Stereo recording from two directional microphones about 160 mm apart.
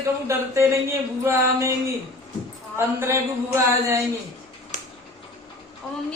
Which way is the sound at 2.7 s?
15° right (ahead or behind).